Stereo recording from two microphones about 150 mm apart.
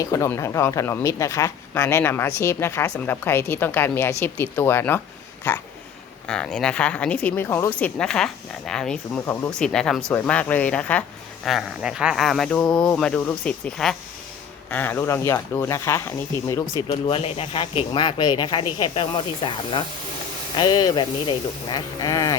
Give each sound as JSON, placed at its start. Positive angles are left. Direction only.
{"t": 0.0, "sound": "speech", "side_deg": 20}
{"t": 9.2, "sound": "speech", "side_deg": 15}
{"t": 9.6, "sound": "speech", "side_deg": 5}
{"t": 11.4, "sound": "speech", "side_deg": -5}
{"t": 17.1, "sound": "speech", "side_deg": 40}